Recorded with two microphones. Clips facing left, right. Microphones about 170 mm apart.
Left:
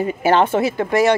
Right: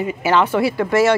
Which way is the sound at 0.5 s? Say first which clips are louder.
Right 1 dB; 20° left (ahead or behind).